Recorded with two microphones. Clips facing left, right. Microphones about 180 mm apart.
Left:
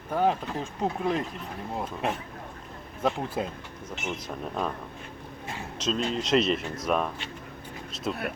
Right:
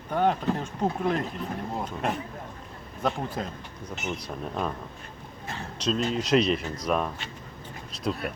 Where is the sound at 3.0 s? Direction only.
5° left (ahead or behind).